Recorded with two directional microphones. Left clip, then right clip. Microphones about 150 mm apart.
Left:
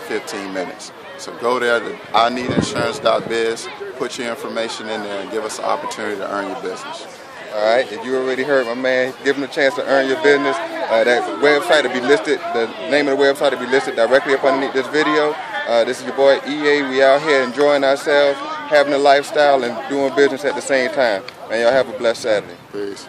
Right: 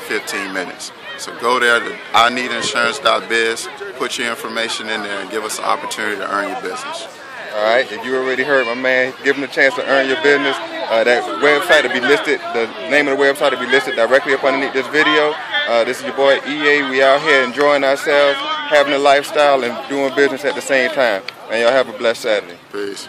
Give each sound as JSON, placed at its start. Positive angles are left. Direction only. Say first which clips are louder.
{"t": 0.1, "sound": "speech", "louder": "right 4 dB", "side_deg": 15}
{"t": 7.5, "sound": "speech", "louder": "right 1 dB", "side_deg": -10}